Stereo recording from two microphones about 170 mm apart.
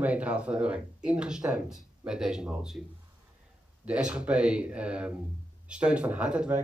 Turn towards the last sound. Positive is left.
turn(degrees=-5)  # may be behind; listen again after turning